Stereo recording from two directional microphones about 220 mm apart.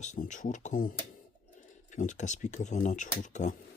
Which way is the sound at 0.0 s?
35° left (ahead or behind).